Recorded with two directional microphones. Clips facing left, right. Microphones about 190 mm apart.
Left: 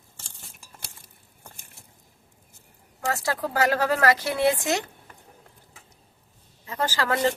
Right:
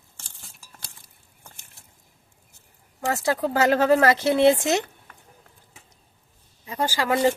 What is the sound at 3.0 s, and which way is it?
Speech, 20° right (ahead or behind).